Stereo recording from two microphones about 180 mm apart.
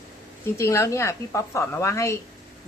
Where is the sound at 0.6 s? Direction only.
15° left (ahead or behind).